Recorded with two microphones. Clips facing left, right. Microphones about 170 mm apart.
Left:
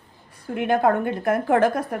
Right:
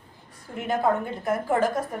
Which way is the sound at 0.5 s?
65° left (ahead or behind).